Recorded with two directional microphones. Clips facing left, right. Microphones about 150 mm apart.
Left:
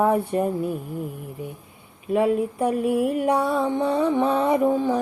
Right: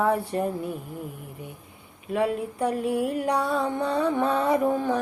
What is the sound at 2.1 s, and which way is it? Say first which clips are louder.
Music: left 5 dB; 25° left (ahead or behind).